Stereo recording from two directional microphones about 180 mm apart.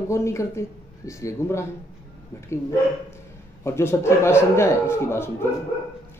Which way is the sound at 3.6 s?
15° left (ahead or behind).